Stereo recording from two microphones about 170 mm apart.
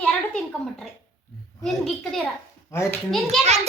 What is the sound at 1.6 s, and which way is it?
Speech, centre (ahead or behind).